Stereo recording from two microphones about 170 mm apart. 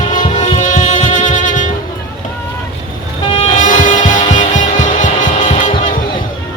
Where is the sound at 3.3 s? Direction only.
35° left (ahead or behind).